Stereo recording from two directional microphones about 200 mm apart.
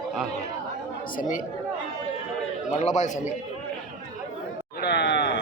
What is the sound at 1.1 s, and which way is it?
Speech, 40° left (ahead or behind).